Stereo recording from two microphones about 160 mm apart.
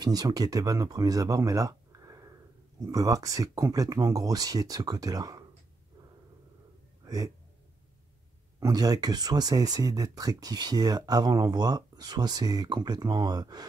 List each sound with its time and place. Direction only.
0.0 s speech: 25° right (ahead or behind)
7.0 s a sound: 25° right (ahead or behind)
8.5 s speech: 20° right (ahead or behind)